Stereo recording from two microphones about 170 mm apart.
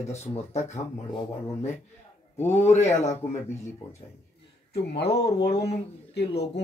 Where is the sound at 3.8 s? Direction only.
35° left (ahead or behind).